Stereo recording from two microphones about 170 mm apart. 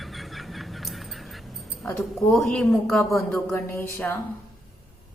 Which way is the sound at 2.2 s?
5° left (ahead or behind).